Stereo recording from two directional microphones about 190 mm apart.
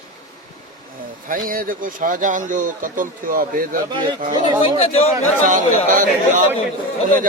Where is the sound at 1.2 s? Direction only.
45° right (ahead or behind).